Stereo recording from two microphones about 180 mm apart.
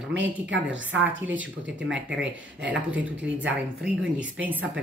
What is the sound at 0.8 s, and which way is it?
Speech, 90° right.